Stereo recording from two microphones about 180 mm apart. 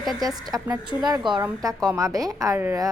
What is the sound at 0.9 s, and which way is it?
A woman's voice, 25° right (ahead or behind).